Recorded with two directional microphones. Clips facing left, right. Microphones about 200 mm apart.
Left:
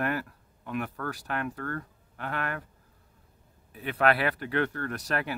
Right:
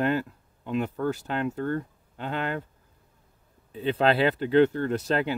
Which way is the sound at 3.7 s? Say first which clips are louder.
Right 3 dB; 25° right (ahead or behind).